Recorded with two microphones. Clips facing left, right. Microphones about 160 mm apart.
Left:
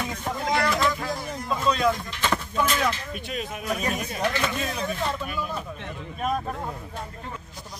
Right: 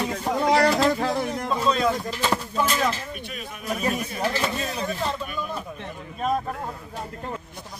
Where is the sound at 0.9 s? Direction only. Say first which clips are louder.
Right 6 dB; 65° right (ahead or behind).